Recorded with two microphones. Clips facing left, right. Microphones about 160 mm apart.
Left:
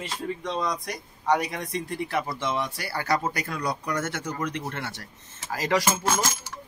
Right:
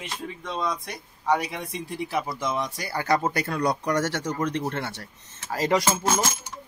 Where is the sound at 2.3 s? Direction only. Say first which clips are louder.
Even; 20° right (ahead or behind).